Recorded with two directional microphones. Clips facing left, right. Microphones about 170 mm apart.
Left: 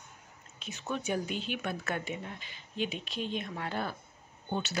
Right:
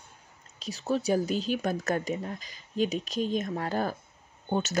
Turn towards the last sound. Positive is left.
turn(degrees=-45)  # may be behind; listen again after turning